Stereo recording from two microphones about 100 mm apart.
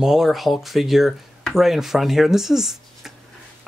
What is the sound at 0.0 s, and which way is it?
Speech, 5° right (ahead or behind).